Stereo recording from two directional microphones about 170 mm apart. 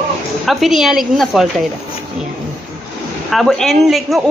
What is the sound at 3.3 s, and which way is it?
Speech, centre (ahead or behind).